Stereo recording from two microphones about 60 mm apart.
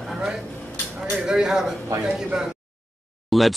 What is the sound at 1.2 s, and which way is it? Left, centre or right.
Speech, centre.